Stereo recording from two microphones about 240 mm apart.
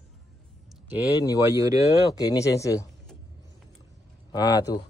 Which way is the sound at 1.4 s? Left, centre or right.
Centre.